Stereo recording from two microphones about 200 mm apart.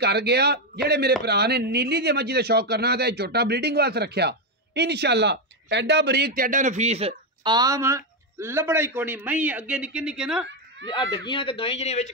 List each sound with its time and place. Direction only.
0.0 s a man's voice: 55° right (ahead or behind); by 10.4 s 5° right (ahead or behind)
11.2 s speech: 25° left (ahead or behind)